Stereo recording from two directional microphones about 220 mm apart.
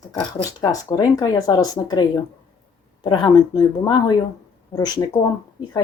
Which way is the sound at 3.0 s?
20° left (ahead or behind).